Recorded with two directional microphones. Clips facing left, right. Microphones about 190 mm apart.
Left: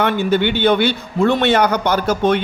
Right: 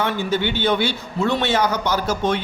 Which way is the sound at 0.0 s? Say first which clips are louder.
Left 5 dB; 60° left (ahead or behind).